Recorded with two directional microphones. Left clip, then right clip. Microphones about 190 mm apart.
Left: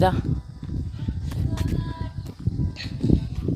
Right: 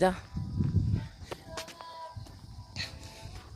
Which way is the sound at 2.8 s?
15° right (ahead or behind).